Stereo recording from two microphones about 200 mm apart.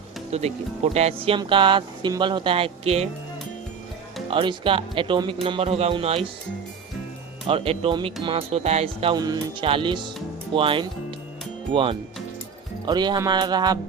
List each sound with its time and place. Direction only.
0.3 s speech: 30° right (ahead or behind)
4.3 s speech: 25° right (ahead or behind)
7.4 s speech: 25° right (ahead or behind)